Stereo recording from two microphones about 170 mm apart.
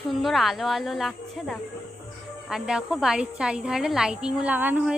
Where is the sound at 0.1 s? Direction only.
Centre (ahead or behind).